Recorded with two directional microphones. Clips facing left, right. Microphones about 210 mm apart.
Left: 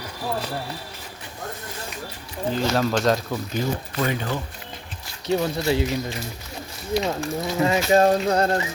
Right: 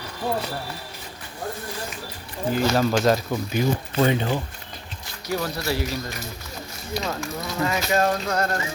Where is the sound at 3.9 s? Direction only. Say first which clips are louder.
Right 5 dB; 25° right (ahead or behind).